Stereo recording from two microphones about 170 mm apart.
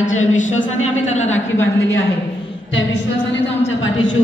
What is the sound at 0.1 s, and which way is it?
A woman's voice, 45° left (ahead or behind).